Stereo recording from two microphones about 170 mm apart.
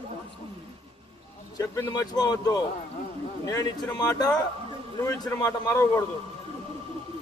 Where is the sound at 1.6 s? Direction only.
20° left (ahead or behind).